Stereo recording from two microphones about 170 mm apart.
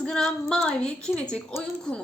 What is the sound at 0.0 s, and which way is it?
A woman's voice, 5° left (ahead or behind).